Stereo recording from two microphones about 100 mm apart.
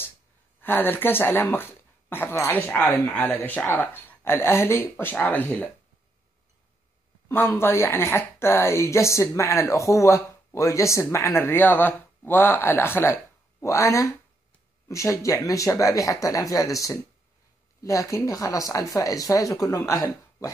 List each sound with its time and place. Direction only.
0.6 s speech: 20° left (ahead or behind)
7.2 s speech: 25° left (ahead or behind)